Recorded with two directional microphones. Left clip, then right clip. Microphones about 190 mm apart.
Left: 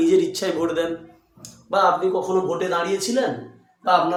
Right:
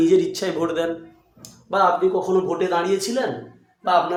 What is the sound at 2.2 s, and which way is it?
Speech, 35° right (ahead or behind).